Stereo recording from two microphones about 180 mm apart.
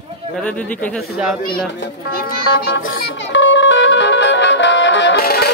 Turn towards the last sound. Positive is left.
turn(degrees=60)  # may be behind; listen again after turning